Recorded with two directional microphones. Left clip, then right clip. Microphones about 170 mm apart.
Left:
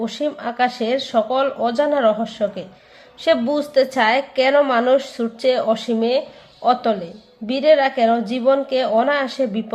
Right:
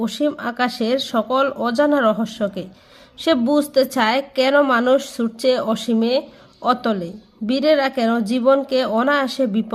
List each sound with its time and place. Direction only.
0.0 s a woman's voice: 45° right (ahead or behind)